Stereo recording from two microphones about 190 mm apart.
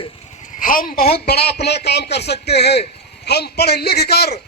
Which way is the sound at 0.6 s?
45° left (ahead or behind).